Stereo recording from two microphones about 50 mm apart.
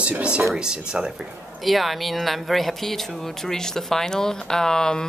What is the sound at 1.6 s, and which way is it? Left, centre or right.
Speech, centre.